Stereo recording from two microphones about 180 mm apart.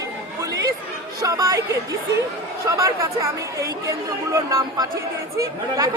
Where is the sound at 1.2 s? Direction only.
20° right (ahead or behind).